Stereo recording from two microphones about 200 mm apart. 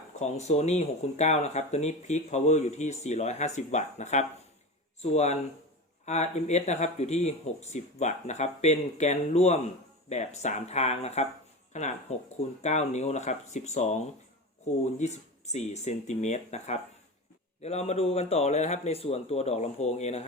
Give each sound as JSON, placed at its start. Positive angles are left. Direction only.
{"t": 0.2, "sound": "speech", "side_deg": 35}